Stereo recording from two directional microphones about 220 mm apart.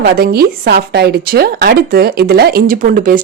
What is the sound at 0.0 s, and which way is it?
Speech, 45° right (ahead or behind).